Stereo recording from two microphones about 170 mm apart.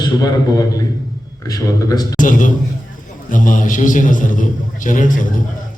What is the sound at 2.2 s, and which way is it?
A man's voice, 50° left (ahead or behind).